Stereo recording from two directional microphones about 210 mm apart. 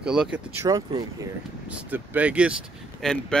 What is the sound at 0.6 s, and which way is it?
Speech, 15° right (ahead or behind).